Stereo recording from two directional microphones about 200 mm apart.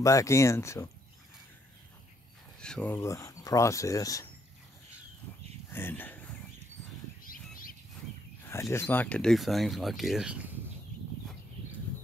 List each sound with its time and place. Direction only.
0.0 s speech: 15° left (ahead or behind)
2.6 s speech: 5° left (ahead or behind)
5.7 s a sound: 10° left (ahead or behind)
7.2 s bird: 45° left (ahead or behind)
8.5 s speech: 15° left (ahead or behind); by 10.4 s 5° right (ahead or behind)